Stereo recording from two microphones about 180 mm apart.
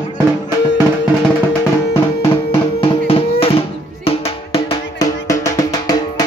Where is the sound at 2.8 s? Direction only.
30° left (ahead or behind).